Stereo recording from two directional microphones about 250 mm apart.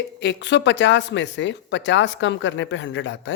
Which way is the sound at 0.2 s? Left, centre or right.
Left.